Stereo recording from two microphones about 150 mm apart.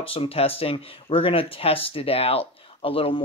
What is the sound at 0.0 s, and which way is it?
Speech, 40° left (ahead or behind).